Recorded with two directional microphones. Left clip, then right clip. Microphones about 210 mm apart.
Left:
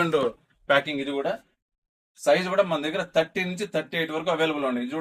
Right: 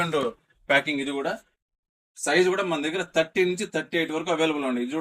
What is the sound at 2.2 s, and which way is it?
Speech, 20° left (ahead or behind).